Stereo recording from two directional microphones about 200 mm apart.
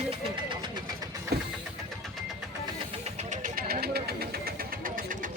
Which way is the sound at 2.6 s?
30° right (ahead or behind).